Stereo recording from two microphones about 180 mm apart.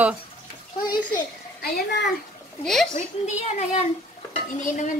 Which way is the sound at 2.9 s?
40° left (ahead or behind).